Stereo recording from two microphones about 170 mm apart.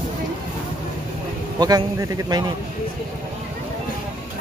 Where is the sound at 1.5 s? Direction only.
25° right (ahead or behind).